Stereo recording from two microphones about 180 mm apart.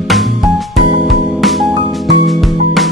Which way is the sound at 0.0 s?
Centre (ahead or behind).